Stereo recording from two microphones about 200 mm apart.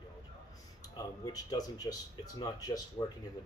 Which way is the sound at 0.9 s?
20° left (ahead or behind).